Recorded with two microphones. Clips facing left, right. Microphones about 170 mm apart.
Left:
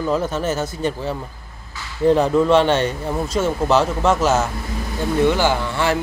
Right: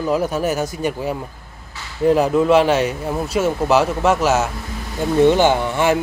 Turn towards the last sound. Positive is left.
turn(degrees=-20)  # may be behind; listen again after turning